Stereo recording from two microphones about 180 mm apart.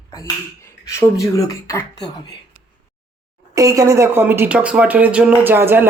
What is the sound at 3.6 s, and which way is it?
Speech, 20° right (ahead or behind).